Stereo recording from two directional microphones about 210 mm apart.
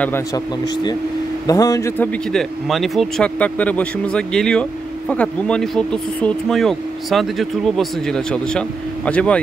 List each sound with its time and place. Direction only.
1.5 s a man's voice: 15° left (ahead or behind)
2.3 s speech: centre (ahead or behind)